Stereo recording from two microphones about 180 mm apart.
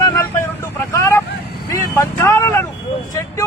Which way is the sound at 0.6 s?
15° left (ahead or behind).